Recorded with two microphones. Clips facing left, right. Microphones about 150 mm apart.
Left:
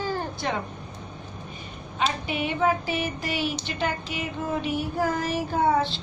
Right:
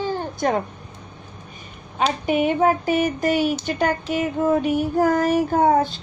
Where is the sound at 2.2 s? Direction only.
45° right (ahead or behind).